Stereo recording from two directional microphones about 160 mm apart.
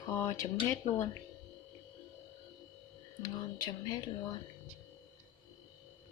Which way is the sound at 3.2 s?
25° left (ahead or behind).